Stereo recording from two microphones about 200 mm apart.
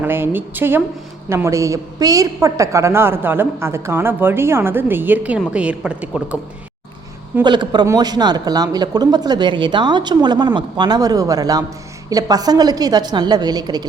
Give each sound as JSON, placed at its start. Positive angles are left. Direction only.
{"t": 0.0, "sound": "a woman's voice", "side_deg": -10}
{"t": 7.4, "sound": "speech", "side_deg": -20}